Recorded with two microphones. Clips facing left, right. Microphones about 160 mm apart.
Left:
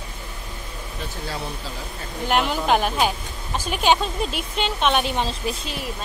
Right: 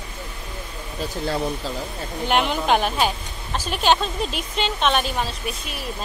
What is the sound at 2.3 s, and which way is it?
A woman's voice, 5° left (ahead or behind).